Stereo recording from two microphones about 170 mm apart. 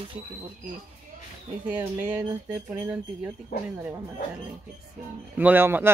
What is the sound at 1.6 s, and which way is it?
Speech, 5° right (ahead or behind).